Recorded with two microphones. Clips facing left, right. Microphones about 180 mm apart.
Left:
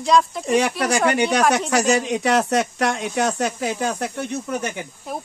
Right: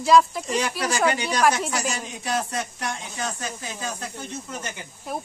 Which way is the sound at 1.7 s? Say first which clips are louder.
Left 11 dB; 75° left (ahead or behind).